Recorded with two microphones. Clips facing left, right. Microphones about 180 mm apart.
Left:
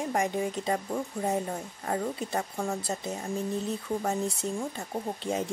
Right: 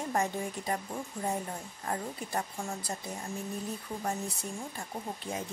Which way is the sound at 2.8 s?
20° left (ahead or behind).